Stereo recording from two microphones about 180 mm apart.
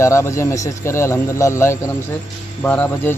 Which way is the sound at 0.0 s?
15° left (ahead or behind).